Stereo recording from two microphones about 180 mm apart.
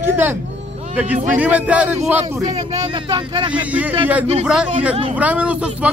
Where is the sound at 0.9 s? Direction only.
10° right (ahead or behind).